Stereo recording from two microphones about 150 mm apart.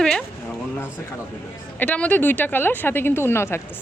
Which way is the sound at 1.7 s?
10° left (ahead or behind).